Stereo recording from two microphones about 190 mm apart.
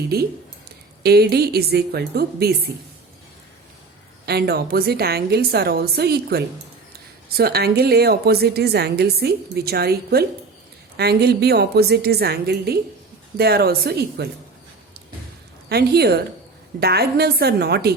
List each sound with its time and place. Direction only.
0.1 s speech: 55° right (ahead or behind)
4.3 s speech: 55° right (ahead or behind)
15.7 s speech: 55° right (ahead or behind)